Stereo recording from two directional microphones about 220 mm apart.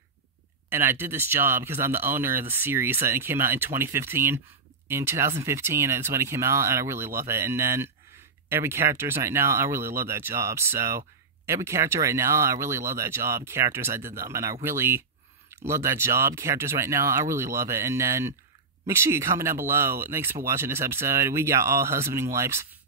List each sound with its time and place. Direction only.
0.7 s speech: 10° right (ahead or behind)